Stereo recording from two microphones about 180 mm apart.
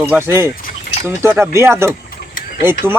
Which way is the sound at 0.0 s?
10° right (ahead or behind).